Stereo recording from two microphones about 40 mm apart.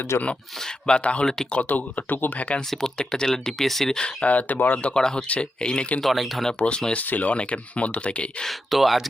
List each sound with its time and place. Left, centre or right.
0.1 s speech: left
0.6 s speech: centre
1.6 s speech: left
2.6 s speech: centre
3.9 s speech: centre
4.3 s speech: left
4.9 s speech: centre
6.0 s speech: centre
6.6 s speech: left
6.9 s speech: left
8.4 s speech: centre